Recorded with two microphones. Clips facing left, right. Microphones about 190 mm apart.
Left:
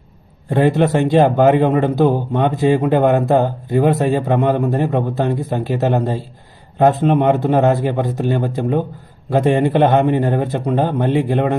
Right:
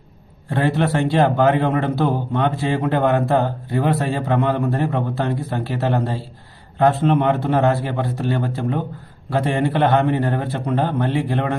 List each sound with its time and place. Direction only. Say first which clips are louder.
0.5 s a man's voice: left 5 dB; 20° left (ahead or behind)